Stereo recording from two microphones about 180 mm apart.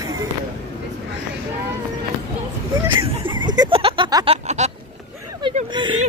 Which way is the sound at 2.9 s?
25° right (ahead or behind).